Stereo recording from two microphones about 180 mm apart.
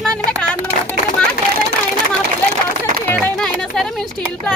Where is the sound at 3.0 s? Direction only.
10° left (ahead or behind).